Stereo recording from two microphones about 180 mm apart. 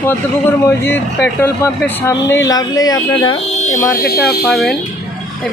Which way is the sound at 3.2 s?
35° left (ahead or behind).